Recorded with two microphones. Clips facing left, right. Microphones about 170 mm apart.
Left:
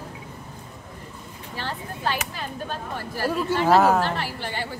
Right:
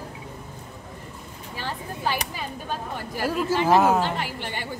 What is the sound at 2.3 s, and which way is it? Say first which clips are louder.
Speech: even; 15° right (ahead or behind).